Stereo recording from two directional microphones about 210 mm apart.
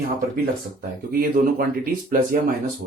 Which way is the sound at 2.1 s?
40° right (ahead or behind).